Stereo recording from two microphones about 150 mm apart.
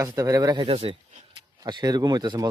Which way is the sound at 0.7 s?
40° right (ahead or behind).